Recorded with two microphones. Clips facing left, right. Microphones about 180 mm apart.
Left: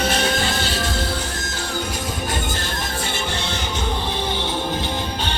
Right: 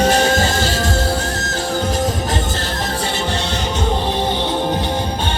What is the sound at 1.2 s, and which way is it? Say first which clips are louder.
Music: right 6 dB; 80° right.